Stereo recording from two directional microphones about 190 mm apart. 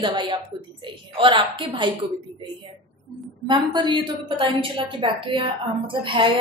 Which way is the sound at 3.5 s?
25° right (ahead or behind).